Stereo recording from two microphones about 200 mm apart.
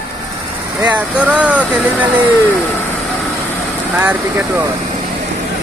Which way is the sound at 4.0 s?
10° right (ahead or behind).